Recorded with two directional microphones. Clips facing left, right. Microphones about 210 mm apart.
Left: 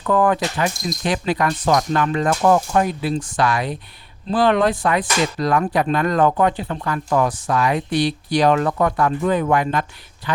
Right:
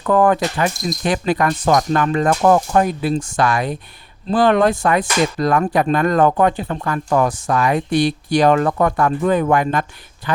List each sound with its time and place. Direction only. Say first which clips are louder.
0.0 s speech: right 3 dB; 45° right (ahead or behind)